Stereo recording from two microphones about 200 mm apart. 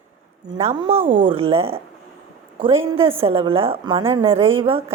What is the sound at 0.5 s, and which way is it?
Speech, 35° right (ahead or behind).